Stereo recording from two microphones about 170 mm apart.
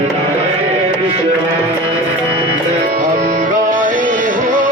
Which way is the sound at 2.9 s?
50° right (ahead or behind).